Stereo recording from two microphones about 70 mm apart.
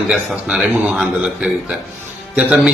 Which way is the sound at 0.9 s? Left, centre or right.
Centre.